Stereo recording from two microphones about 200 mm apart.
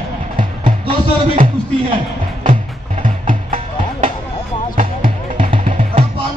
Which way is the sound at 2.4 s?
40° right (ahead or behind).